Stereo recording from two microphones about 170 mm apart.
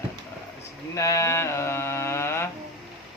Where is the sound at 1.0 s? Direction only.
20° left (ahead or behind).